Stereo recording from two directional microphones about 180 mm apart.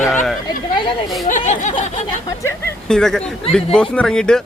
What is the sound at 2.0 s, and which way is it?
Speech, 15° left (ahead or behind).